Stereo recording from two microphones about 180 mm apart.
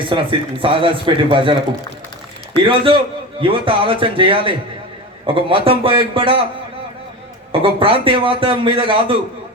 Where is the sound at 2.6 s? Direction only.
30° right (ahead or behind).